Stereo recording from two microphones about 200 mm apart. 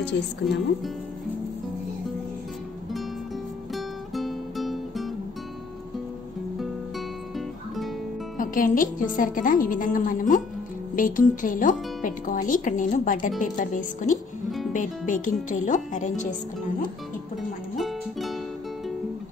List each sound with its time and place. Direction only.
0.1 s speech: 60° left (ahead or behind)
3.7 s music: centre (ahead or behind)
7.3 s music: centre (ahead or behind)
8.4 s speech: 40° left (ahead or behind)
17.7 s music: centre (ahead or behind)